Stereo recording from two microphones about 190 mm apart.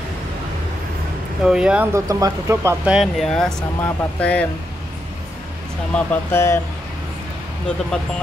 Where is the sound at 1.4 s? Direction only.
5° right (ahead or behind).